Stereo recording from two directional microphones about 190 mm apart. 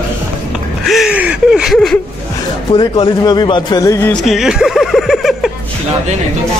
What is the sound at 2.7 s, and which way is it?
A man's voice, 25° left (ahead or behind).